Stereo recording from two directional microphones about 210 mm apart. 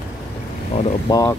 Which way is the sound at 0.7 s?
20° left (ahead or behind).